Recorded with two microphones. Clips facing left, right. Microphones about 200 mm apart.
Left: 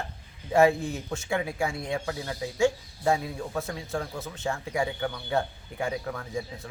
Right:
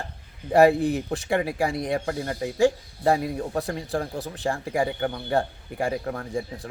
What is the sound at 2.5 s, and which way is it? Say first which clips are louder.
Speech: right 3 dB; 35° right (ahead or behind).